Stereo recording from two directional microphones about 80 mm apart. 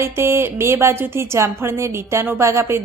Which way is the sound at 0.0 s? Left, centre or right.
Right.